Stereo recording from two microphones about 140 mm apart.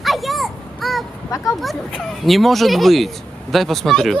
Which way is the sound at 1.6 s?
Centre (ahead or behind).